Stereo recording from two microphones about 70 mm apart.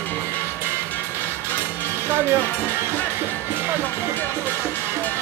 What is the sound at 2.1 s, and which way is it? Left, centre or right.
Speech, right.